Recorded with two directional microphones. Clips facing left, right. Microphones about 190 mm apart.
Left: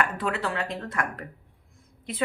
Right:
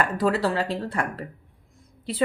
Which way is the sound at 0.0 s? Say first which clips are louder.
Right 5 dB; 35° right (ahead or behind).